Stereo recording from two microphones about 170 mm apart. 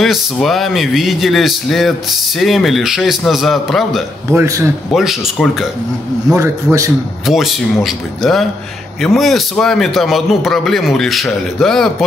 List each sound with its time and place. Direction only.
0.0 s speech: centre (ahead or behind)
4.3 s a man's voice: 15° right (ahead or behind)
4.9 s speech: centre (ahead or behind)
6.4 s a man's voice: 20° right (ahead or behind)
7.2 s speech: centre (ahead or behind)